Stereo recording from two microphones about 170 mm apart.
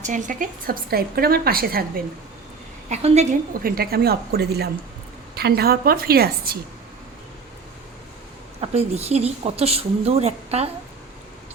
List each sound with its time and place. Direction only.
0.0 s a woman's voice: 50° right (ahead or behind)
2.9 s a woman's voice: 40° right (ahead or behind)
3.6 s a woman's voice: 60° right (ahead or behind)
8.6 s a woman's voice: 40° right (ahead or behind)